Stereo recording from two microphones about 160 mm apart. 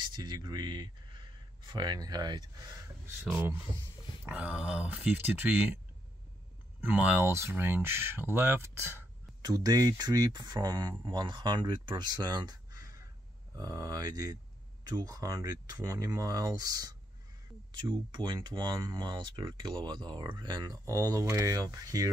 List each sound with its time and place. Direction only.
0.0 s speech: 30° right (ahead or behind)
3.3 s speech: 15° right (ahead or behind)
6.8 s speech: 10° right (ahead or behind)
9.4 s speech: 25° right (ahead or behind)